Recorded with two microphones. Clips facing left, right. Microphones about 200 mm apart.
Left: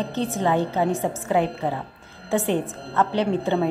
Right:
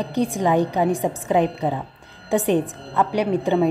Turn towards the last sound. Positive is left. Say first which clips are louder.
# right 2 dB
turn(degrees=-15)  # may be behind; listen again after turning